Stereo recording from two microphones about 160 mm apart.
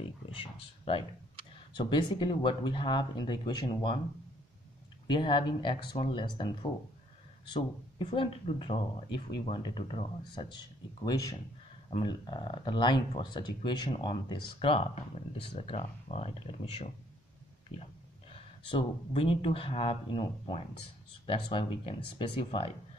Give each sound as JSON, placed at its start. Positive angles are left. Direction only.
{"t": 0.0, "sound": "a sound", "side_deg": 35}
{"t": 1.7, "sound": "speech", "side_deg": 30}
{"t": 5.0, "sound": "speech", "side_deg": 30}
{"t": 18.3, "sound": "speech", "side_deg": 35}